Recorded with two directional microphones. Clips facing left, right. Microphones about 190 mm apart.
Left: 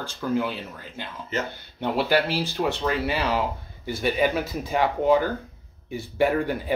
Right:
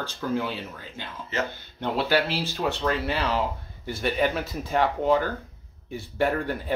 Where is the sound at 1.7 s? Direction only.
10° left (ahead or behind).